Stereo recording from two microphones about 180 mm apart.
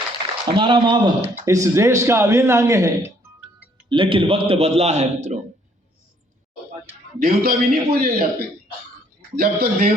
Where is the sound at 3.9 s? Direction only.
30° right (ahead or behind).